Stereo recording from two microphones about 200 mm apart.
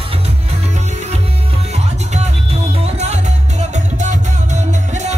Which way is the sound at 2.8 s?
35° right (ahead or behind).